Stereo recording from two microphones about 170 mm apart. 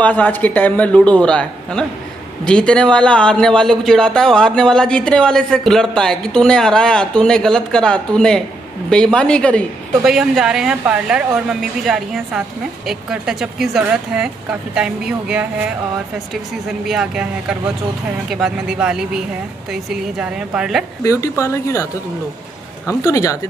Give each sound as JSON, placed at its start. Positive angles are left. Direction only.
{"t": 0.0, "sound": "a man's voice", "side_deg": 10}
{"t": 21.0, "sound": "a man's voice", "side_deg": 20}
{"t": 23.0, "sound": "speech", "side_deg": 20}